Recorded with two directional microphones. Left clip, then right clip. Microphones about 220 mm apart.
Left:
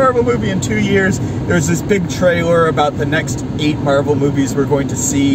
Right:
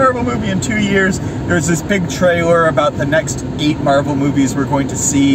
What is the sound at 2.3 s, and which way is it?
Speech, 20° right (ahead or behind).